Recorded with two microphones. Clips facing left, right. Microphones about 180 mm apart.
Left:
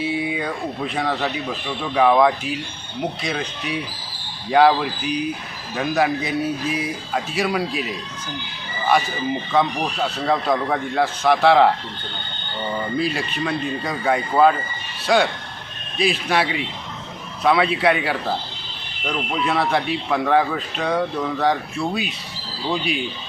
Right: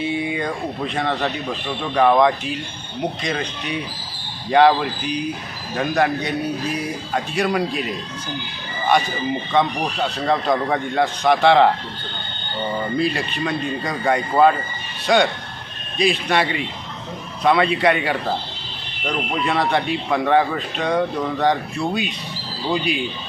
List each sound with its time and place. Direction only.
0.0 s a man's voice: 5° left (ahead or behind)
9.5 s a man's voice: centre (ahead or behind)
13.0 s a man's voice: centre (ahead or behind)